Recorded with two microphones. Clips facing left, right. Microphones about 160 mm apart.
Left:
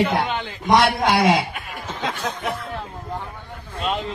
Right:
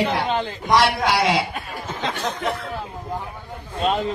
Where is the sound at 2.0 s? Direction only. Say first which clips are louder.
Right 1 dB; 5° left (ahead or behind).